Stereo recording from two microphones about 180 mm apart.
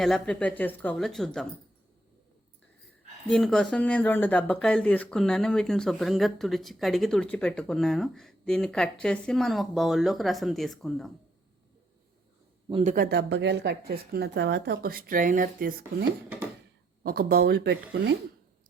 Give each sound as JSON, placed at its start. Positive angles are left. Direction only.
{"t": 0.0, "sound": "speech", "side_deg": 5}
{"t": 3.2, "sound": "speech", "side_deg": 5}
{"t": 12.8, "sound": "speech", "side_deg": -45}
{"t": 13.1, "sound": "speech", "side_deg": -75}